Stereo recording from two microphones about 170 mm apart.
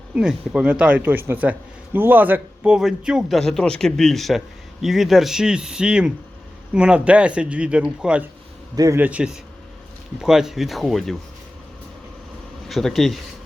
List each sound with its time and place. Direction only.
0.1 s a man's voice: 5° right (ahead or behind)
8.7 s a man's voice: 20° right (ahead or behind)
9.0 s a man's voice: 10° right (ahead or behind)
12.6 s speech: centre (ahead or behind)